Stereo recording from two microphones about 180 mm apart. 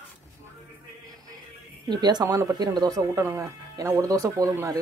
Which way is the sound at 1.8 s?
25° right (ahead or behind).